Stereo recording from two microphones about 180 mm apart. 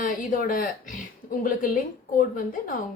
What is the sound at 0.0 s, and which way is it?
A woman's voice, 50° left (ahead or behind).